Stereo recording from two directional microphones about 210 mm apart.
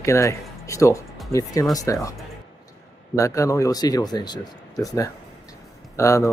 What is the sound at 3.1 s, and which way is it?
Speech, 15° left (ahead or behind).